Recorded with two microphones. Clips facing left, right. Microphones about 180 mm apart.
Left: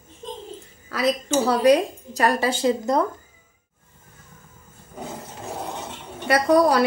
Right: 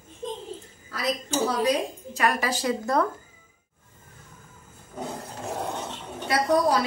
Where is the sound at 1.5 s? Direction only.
70° left (ahead or behind).